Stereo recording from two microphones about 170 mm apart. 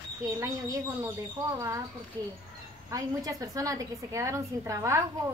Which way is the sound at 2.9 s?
20° right (ahead or behind).